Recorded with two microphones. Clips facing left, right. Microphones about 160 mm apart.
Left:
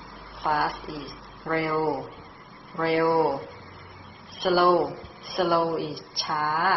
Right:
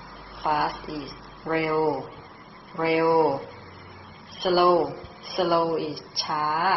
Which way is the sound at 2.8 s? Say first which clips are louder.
Right 2 dB; 15° right (ahead or behind).